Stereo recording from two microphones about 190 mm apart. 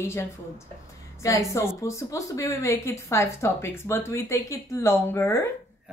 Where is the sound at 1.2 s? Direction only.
15° left (ahead or behind).